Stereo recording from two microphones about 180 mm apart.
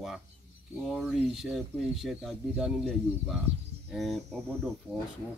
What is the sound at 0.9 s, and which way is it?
Speech, centre (ahead or behind).